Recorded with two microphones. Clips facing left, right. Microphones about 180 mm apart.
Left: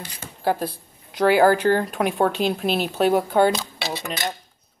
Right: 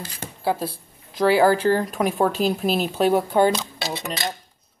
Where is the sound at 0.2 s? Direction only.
30° right (ahead or behind).